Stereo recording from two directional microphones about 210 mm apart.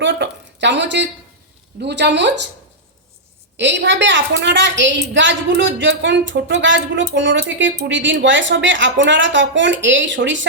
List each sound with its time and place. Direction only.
0.0 s a sound: 60° right (ahead or behind)
1.8 s a woman's voice: 55° right (ahead or behind)
3.6 s a woman's voice: 60° right (ahead or behind)